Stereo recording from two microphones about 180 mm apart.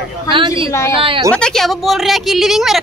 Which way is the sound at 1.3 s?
5° left (ahead or behind).